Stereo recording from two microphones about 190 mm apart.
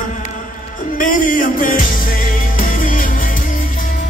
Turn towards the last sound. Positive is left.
turn(degrees=45)  # may be behind; listen again after turning